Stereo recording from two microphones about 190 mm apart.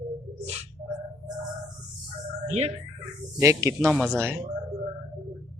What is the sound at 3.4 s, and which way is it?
Speech, 15° right (ahead or behind).